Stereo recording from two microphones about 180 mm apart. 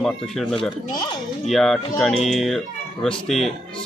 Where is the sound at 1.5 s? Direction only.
Centre (ahead or behind).